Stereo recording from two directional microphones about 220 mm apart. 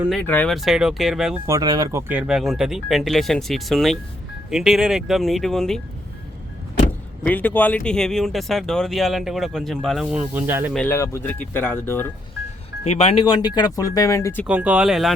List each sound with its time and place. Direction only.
0.0 s speech: 5° left (ahead or behind)
1.5 s speech: 15° right (ahead or behind); by 5.8 s centre (ahead or behind)
7.3 s speech: 10° left (ahead or behind); by 10.7 s 10° right (ahead or behind)
10.8 s speech: 10° left (ahead or behind)
12.8 s speech: 30° left (ahead or behind)
14.4 s speech: 5° right (ahead or behind)